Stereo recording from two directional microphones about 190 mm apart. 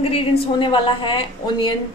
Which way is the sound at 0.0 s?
25° left (ahead or behind).